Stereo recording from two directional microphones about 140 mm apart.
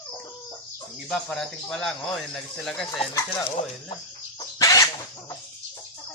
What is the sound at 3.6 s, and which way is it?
Speech, 50° left (ahead or behind).